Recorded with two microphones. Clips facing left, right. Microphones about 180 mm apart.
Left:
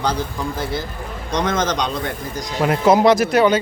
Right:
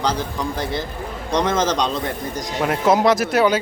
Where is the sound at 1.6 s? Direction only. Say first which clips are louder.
Right 1 dB; 5° right (ahead or behind).